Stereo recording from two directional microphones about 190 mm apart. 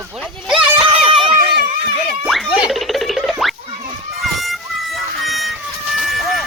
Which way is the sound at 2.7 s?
Centre (ahead or behind).